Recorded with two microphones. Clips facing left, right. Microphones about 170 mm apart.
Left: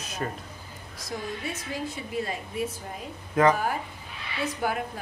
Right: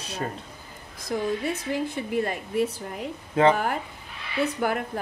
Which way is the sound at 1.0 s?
60° right (ahead or behind).